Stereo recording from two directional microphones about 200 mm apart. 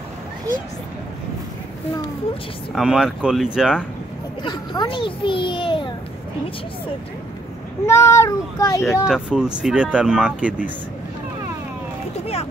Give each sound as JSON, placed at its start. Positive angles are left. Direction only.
{"t": 2.7, "sound": "speech", "side_deg": -5}
{"t": 4.4, "sound": "a child's voice", "side_deg": 20}
{"t": 7.8, "sound": "speech", "side_deg": 15}
{"t": 9.0, "sound": "speech", "side_deg": -5}